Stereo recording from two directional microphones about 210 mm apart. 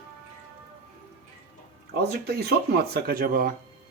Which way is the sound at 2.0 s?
50° right (ahead or behind).